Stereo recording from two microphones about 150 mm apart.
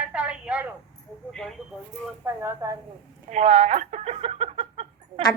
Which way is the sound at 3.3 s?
45° right (ahead or behind).